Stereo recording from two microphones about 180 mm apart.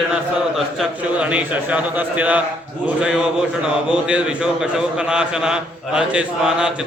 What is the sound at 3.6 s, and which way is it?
Speech, 5° right (ahead or behind).